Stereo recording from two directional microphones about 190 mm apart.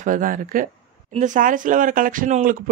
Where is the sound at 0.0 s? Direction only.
45° right (ahead or behind).